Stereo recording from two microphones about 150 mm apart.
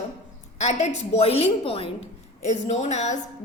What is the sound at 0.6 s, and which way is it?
A woman's voice, 50° left (ahead or behind).